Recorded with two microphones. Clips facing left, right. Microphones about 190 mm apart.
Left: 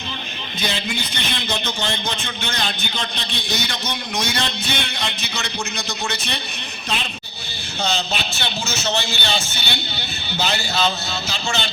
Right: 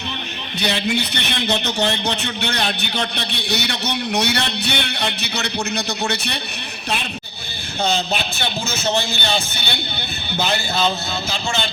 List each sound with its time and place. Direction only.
0.6 s a man's voice: 65° right (ahead or behind)
7.9 s speech: 55° right (ahead or behind)